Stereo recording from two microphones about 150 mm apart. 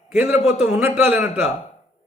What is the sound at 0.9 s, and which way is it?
Speech, 5° right (ahead or behind).